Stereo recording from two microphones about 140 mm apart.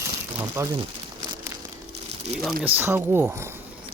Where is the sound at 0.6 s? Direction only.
15° right (ahead or behind).